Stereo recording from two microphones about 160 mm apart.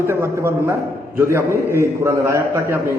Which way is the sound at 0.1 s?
15° right (ahead or behind).